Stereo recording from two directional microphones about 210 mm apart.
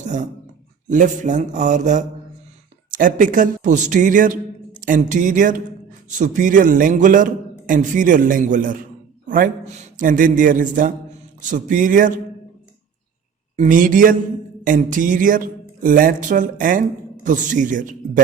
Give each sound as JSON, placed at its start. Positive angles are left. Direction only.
{"t": 0.0, "sound": "a man's voice", "side_deg": -35}
{"t": 13.6, "sound": "a man's voice", "side_deg": -40}